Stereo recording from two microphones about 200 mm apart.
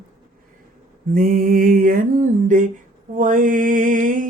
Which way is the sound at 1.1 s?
45° right (ahead or behind).